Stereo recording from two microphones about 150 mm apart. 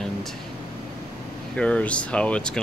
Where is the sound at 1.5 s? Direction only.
5° left (ahead or behind).